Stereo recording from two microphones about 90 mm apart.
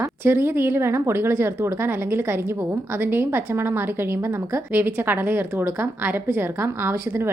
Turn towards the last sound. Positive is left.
turn(degrees=-30)  # may be behind; listen again after turning